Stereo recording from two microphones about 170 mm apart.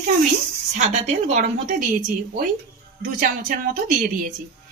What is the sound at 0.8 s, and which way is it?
Speech, 45° right (ahead or behind).